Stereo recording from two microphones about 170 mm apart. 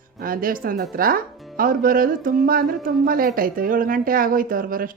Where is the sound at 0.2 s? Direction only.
55° right (ahead or behind).